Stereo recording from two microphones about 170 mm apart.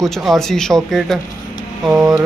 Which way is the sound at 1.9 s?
15° right (ahead or behind).